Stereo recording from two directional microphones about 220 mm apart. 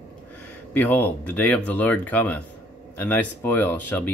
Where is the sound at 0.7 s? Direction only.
10° left (ahead or behind).